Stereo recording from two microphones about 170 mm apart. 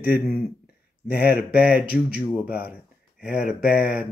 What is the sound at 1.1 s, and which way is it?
Speech, 70° left (ahead or behind).